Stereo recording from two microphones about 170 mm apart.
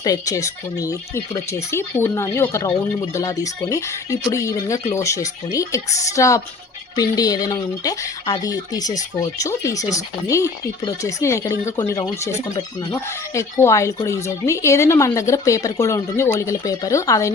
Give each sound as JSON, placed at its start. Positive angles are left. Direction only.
{"t": 0.0, "sound": "speech", "side_deg": 20}